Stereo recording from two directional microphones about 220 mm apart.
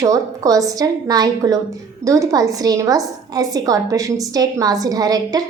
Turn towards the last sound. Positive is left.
turn(degrees=-15)  # may be behind; listen again after turning